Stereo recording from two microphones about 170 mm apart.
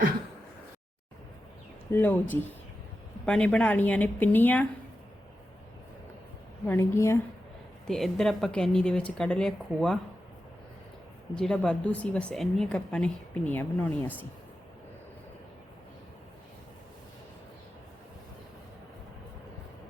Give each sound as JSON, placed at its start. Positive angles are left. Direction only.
{"t": 1.9, "sound": "speech", "side_deg": 10}
{"t": 6.7, "sound": "speech", "side_deg": 15}
{"t": 7.9, "sound": "a woman's voice", "side_deg": 0}
{"t": 11.3, "sound": "a woman's voice", "side_deg": 5}